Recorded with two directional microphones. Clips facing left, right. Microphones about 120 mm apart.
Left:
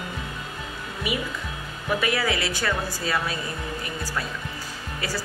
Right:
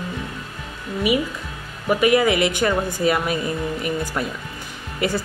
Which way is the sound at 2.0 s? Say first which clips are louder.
Right 10 dB; 15° right (ahead or behind).